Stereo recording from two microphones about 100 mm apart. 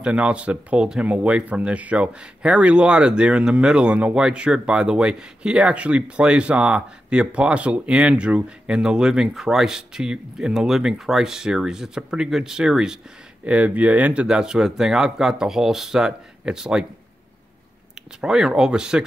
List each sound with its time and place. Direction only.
0.0 s speech: 10° right (ahead or behind)
18.2 s speech: 5° right (ahead or behind)